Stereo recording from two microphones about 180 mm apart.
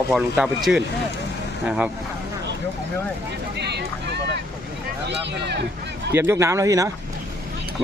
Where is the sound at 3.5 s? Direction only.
65° right (ahead or behind).